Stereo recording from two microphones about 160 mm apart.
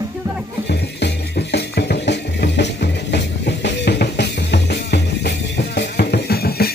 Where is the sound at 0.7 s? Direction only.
90° left.